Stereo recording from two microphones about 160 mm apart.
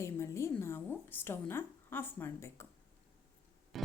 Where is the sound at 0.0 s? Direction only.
15° left (ahead or behind).